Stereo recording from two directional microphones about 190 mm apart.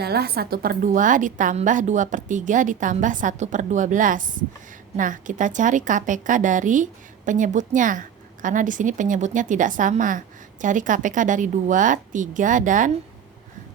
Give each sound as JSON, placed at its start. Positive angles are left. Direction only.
{"t": 0.0, "sound": "a woman's voice", "side_deg": -55}